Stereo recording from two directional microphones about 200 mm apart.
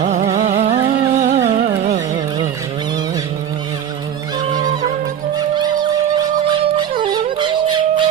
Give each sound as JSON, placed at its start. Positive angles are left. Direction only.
{"t": 0.0, "sound": "a sound", "side_deg": -35}
{"t": 0.9, "sound": "music", "side_deg": -40}
{"t": 1.6, "sound": "carnatic music", "side_deg": -35}
{"t": 4.4, "sound": "music", "side_deg": -20}
{"t": 5.4, "sound": "a sound", "side_deg": -20}
{"t": 7.0, "sound": "dog", "side_deg": -25}